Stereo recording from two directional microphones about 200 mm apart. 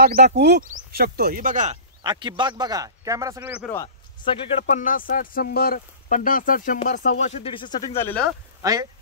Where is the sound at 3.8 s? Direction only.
25° left (ahead or behind).